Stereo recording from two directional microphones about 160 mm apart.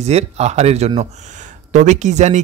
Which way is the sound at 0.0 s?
45° right (ahead or behind).